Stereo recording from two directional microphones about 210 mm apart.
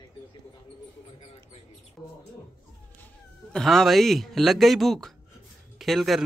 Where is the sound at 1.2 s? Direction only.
30° left (ahead or behind).